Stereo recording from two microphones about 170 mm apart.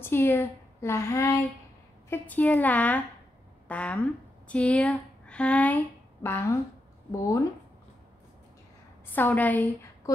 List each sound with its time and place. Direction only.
0.0 s a woman's voice: 15° left (ahead or behind)
9.0 s a woman's voice: 10° left (ahead or behind)